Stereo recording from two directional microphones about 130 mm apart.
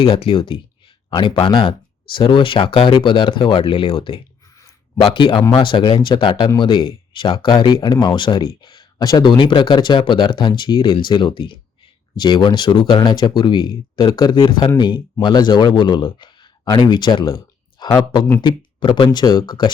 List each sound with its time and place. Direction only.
0.0 s speech: 50° left (ahead or behind)